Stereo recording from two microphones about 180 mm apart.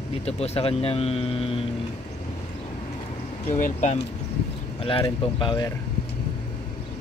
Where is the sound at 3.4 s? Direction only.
40° left (ahead or behind).